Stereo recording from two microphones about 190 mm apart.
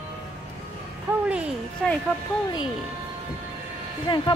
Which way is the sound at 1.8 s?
Centre (ahead or behind).